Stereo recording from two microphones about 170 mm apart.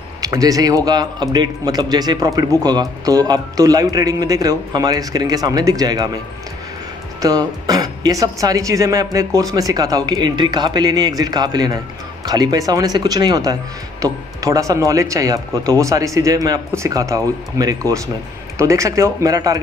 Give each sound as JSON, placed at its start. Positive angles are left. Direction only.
{"t": 0.2, "sound": "a woman's voice", "side_deg": -20}
{"t": 7.2, "sound": "a woman's voice", "side_deg": -20}